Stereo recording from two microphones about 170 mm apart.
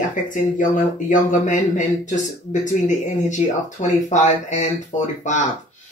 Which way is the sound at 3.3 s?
45° left (ahead or behind).